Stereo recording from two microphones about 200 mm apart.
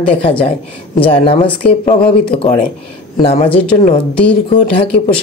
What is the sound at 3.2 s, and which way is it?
Speech, 30° left (ahead or behind).